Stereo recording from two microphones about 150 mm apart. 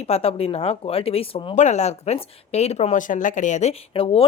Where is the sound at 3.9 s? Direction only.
40° left (ahead or behind).